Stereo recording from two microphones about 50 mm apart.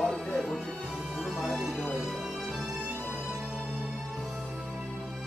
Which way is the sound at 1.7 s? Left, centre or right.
Centre.